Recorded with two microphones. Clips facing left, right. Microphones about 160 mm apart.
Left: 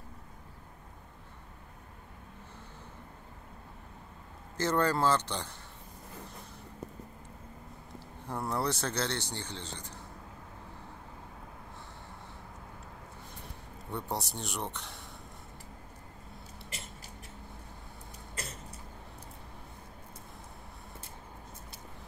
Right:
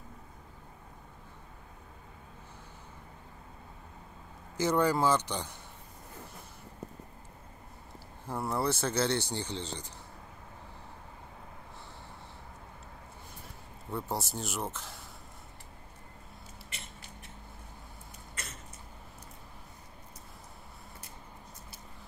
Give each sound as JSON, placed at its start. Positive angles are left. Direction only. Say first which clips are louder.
{"t": 4.6, "sound": "speech", "louder": "right 1 dB", "side_deg": -15}
{"t": 8.3, "sound": "speech", "louder": "right 1 dB", "side_deg": -5}
{"t": 9.5, "sound": "speech", "louder": "right 4 dB", "side_deg": -30}
{"t": 13.8, "sound": "speech", "louder": "right 1 dB", "side_deg": 0}
{"t": 18.4, "sound": "a sound", "louder": "left 4 dB", "side_deg": 35}